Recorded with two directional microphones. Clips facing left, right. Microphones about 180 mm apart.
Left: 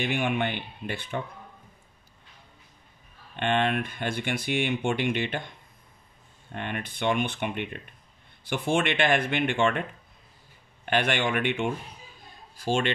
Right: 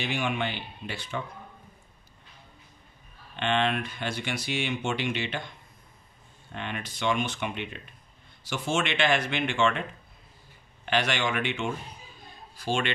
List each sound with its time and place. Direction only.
0.0 s speech: 55° left (ahead or behind)
3.3 s speech: 50° left (ahead or behind)
6.5 s speech: 50° left (ahead or behind)
10.9 s speech: 55° left (ahead or behind)
12.5 s speech: 45° left (ahead or behind)